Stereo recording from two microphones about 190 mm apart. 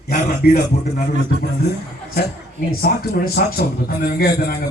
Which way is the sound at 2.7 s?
55° left (ahead or behind).